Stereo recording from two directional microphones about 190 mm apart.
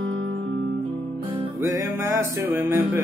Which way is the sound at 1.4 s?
15° right (ahead or behind).